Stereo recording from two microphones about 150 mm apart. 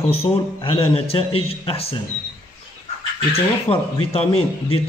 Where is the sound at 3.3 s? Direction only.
40° left (ahead or behind).